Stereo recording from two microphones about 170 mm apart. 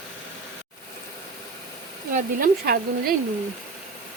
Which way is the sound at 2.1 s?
60° right (ahead or behind).